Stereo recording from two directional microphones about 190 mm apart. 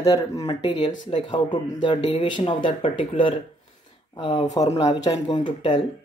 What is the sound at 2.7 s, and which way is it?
Speech, 40° left (ahead or behind).